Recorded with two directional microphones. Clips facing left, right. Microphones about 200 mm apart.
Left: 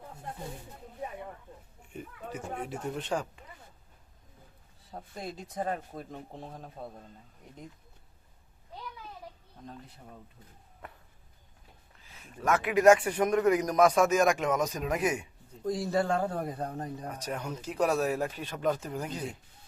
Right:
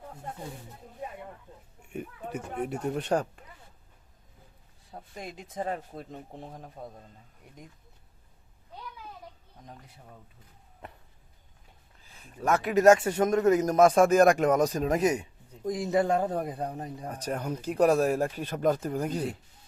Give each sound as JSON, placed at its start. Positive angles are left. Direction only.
{"t": 2.0, "sound": "speech", "side_deg": -60}
{"t": 5.1, "sound": "a man's voice", "side_deg": -15}
{"t": 12.1, "sound": "speech", "side_deg": -35}
{"t": 13.1, "sound": "speech", "side_deg": -25}
{"t": 15.2, "sound": "a man's voice", "side_deg": -20}
{"t": 17.3, "sound": "speech", "side_deg": -45}